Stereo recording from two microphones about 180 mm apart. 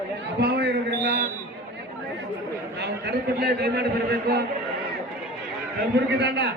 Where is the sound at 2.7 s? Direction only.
65° right (ahead or behind).